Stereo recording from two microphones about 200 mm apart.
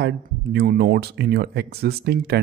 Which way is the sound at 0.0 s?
55° right (ahead or behind).